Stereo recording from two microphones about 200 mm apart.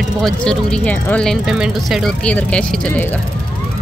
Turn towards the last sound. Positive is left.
turn(degrees=5)  # may be behind; listen again after turning